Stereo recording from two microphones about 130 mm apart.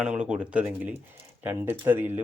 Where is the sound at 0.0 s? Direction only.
5° right (ahead or behind).